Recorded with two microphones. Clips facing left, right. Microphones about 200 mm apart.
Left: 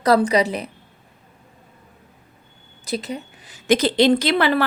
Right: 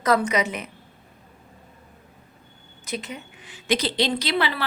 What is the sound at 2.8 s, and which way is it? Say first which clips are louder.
A woman's voice: left 6 dB; 35° left (ahead or behind).